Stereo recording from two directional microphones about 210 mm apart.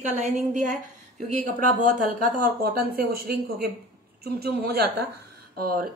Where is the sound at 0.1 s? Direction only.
35° right (ahead or behind).